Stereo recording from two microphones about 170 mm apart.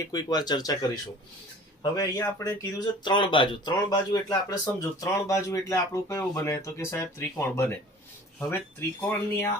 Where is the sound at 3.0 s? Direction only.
30° left (ahead or behind).